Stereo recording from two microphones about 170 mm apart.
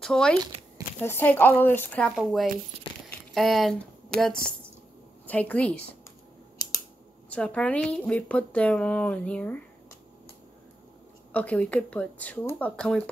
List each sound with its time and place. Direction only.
0.0 s speech: 5° left (ahead or behind)
3.1 s a sound: centre (ahead or behind)
5.2 s speech: 10° left (ahead or behind)
7.2 s speech: 5° left (ahead or behind)
11.3 s speech: 5° left (ahead or behind)